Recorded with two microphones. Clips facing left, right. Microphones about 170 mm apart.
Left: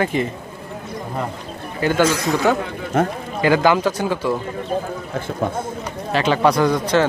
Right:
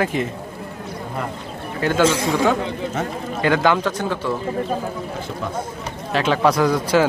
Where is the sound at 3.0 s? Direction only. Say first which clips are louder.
Left 9 dB; 55° left (ahead or behind).